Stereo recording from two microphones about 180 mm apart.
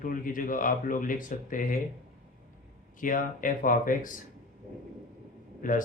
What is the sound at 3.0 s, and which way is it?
Speech, 45° left (ahead or behind).